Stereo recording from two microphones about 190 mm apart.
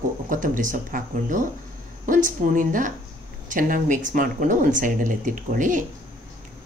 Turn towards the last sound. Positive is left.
turn(degrees=-40)  # may be behind; listen again after turning